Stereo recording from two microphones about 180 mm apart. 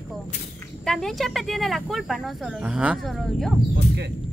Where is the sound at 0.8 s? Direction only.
Centre (ahead or behind).